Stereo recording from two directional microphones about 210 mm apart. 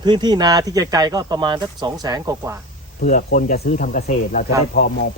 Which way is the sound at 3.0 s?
40° left (ahead or behind).